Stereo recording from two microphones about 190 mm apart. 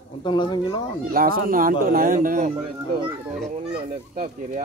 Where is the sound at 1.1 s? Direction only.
50° right (ahead or behind).